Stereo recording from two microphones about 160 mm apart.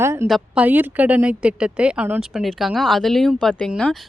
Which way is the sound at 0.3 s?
5° right (ahead or behind).